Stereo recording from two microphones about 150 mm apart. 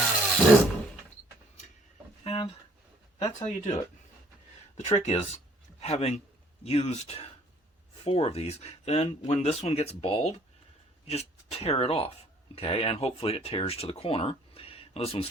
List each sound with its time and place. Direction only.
0.0 s wood: 5° left (ahead or behind)
2.2 s a sound: 40° left (ahead or behind)
3.2 s speech: 40° left (ahead or behind)
4.9 s speech: 50° left (ahead or behind)